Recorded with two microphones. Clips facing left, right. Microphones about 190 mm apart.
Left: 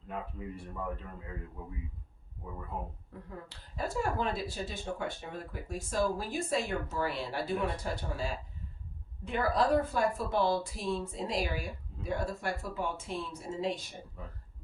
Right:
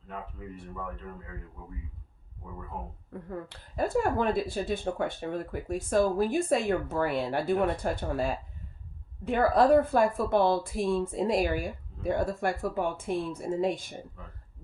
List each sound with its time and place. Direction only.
3.1 s a woman's voice: 55° right (ahead or behind)